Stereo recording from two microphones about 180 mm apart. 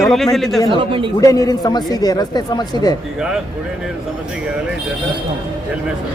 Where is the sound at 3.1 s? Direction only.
5° right (ahead or behind).